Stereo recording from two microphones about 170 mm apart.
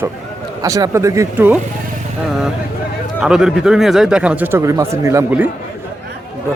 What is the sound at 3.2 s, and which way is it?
Speech, 5° right (ahead or behind).